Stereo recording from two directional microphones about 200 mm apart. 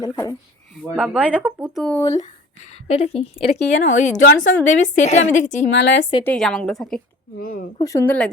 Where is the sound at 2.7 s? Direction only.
30° left (ahead or behind).